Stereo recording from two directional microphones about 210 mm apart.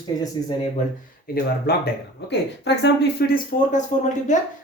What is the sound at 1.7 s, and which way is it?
Speech, 45° left (ahead or behind).